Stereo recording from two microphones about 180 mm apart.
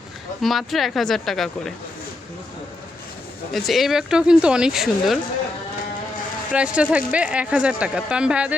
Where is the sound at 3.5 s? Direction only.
Centre (ahead or behind).